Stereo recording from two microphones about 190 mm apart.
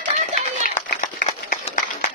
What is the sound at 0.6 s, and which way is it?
Clapping, 50° left (ahead or behind).